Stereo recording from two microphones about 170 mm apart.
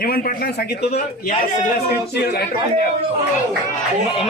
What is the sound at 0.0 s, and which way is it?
Speech, 60° left (ahead or behind).